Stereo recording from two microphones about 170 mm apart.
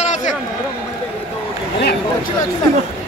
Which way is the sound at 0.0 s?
45° left (ahead or behind).